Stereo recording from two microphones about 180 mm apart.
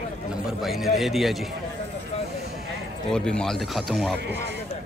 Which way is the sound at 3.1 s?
5° left (ahead or behind).